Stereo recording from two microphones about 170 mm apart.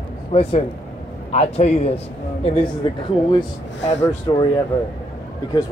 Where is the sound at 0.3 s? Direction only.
35° left (ahead or behind).